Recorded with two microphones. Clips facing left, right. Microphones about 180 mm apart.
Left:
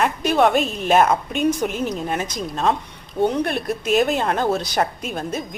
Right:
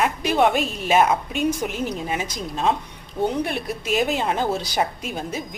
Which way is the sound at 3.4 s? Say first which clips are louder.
Left 4 dB; 55° left (ahead or behind).